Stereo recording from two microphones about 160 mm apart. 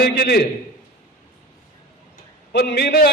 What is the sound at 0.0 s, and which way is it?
Speech, 80° left.